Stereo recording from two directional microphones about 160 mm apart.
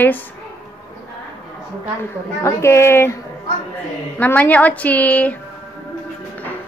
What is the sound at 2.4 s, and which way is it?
Speech, 15° left (ahead or behind).